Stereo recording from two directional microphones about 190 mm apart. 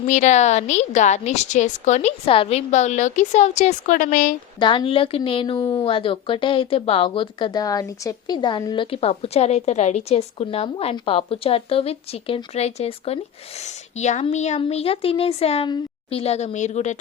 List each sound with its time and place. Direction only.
0.1 s a woman's voice: 40° left (ahead or behind)
4.6 s a woman's voice: 25° left (ahead or behind)